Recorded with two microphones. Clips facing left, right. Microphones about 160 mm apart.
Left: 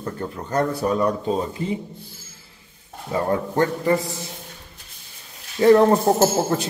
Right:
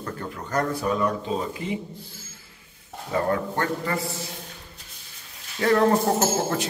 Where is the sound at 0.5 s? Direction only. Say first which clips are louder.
Left 3 dB; 35° left (ahead or behind).